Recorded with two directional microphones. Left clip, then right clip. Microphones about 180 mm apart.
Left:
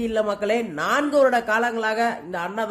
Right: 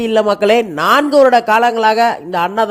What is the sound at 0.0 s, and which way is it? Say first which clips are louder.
A man's voice: right 11 dB; 45° right (ahead or behind).